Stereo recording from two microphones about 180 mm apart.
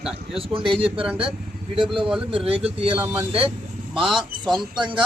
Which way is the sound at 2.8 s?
30° right (ahead or behind).